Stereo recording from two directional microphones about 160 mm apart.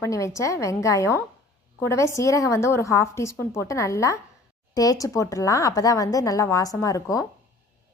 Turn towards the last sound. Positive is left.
turn(degrees=20)  # may be behind; listen again after turning